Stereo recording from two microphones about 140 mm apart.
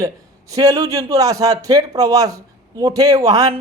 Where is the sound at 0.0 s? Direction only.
25° right (ahead or behind).